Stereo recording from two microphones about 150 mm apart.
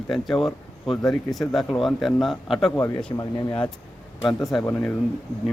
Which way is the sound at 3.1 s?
30° left (ahead or behind).